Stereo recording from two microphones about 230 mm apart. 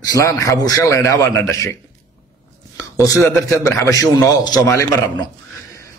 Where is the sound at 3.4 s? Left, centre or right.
Centre.